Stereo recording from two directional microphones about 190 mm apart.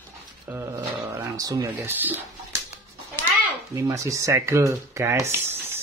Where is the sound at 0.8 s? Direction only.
20° right (ahead or behind).